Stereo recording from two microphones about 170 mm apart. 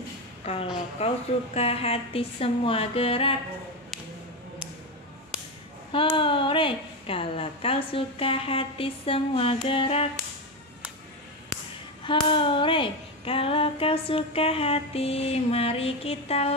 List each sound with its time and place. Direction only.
0.9 s female singing: 35° left (ahead or behind)
5.9 s female singing: 30° left (ahead or behind)
12.0 s female singing: 30° left (ahead or behind)